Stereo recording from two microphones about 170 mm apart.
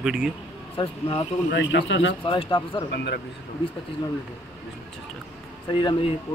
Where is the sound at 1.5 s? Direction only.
90° left.